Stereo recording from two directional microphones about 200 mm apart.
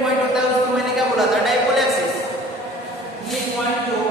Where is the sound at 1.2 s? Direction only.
Centre (ahead or behind).